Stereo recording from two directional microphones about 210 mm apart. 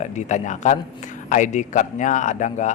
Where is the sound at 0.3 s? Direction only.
35° left (ahead or behind).